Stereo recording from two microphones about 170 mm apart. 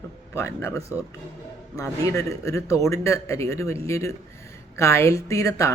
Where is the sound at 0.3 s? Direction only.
15° left (ahead or behind).